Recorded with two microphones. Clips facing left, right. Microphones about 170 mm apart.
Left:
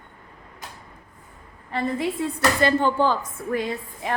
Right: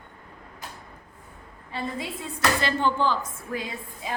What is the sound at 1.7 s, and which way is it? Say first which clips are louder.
Speech: left 7 dB; 60° left (ahead or behind).